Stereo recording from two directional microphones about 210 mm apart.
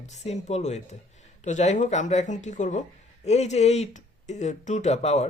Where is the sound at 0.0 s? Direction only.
35° left (ahead or behind).